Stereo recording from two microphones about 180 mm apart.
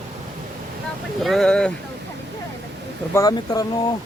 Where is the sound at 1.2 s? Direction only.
Centre (ahead or behind).